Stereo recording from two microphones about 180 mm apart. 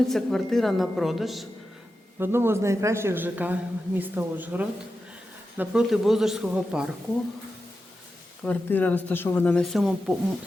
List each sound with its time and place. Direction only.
0.1 s a woman's voice: centre (ahead or behind)
2.1 s a man's voice: 10° right (ahead or behind)
8.4 s speech: 10° left (ahead or behind)